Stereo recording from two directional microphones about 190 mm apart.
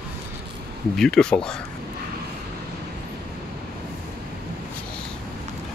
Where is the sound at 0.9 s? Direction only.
5° left (ahead or behind).